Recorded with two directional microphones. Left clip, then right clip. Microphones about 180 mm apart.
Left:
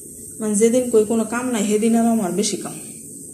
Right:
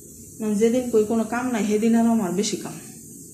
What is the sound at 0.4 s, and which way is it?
Speech, centre (ahead or behind).